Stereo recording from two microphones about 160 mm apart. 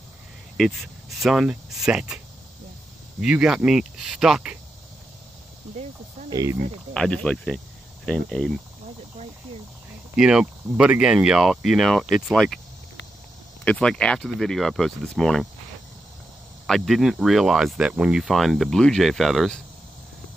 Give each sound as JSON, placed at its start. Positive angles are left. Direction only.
{"t": 0.6, "sound": "speech", "side_deg": 5}
{"t": 3.2, "sound": "speech", "side_deg": -5}
{"t": 6.3, "sound": "speech", "side_deg": -20}
{"t": 6.9, "sound": "speech", "side_deg": 5}
{"t": 10.1, "sound": "speech", "side_deg": -5}
{"t": 13.7, "sound": "speech", "side_deg": 5}
{"t": 16.6, "sound": "speech", "side_deg": 0}